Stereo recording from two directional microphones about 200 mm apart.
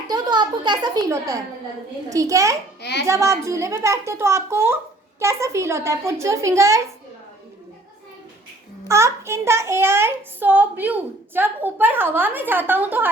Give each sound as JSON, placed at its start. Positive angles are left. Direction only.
{"t": 0.1, "sound": "a child's voice", "side_deg": -20}
{"t": 8.9, "sound": "a child's voice", "side_deg": -15}